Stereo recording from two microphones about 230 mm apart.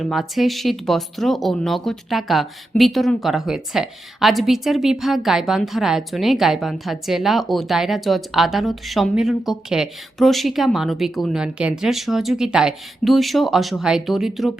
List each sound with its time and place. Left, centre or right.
0.0 s speech: centre